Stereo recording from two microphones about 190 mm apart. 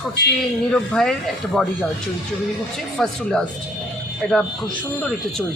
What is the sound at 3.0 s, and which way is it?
Speech, centre (ahead or behind).